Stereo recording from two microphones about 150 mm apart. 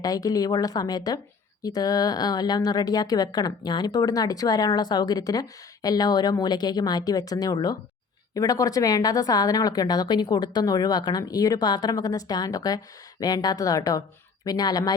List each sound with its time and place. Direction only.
0.0 s speech: 25° left (ahead or behind)